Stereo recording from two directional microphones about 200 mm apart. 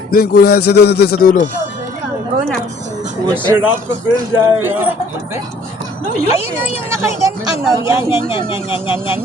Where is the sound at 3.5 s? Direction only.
10° right (ahead or behind).